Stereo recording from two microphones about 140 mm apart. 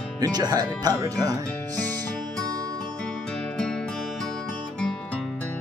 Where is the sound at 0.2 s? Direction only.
30° right (ahead or behind).